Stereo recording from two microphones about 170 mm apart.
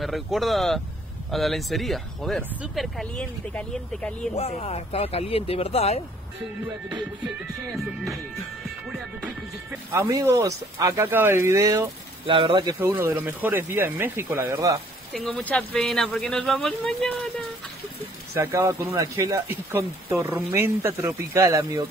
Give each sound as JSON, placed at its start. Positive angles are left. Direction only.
{"t": 0.0, "sound": "speech", "side_deg": 0}
{"t": 4.4, "sound": "speech", "side_deg": 40}
{"t": 7.7, "sound": "speech", "side_deg": 0}
{"t": 9.7, "sound": "speech", "side_deg": -20}
{"t": 12.3, "sound": "speech", "side_deg": -30}
{"t": 12.7, "sound": "speech", "side_deg": -10}
{"t": 15.1, "sound": "speech", "side_deg": 10}
{"t": 18.3, "sound": "speech", "side_deg": -15}